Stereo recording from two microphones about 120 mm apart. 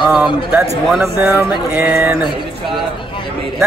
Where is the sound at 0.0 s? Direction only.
5° right (ahead or behind).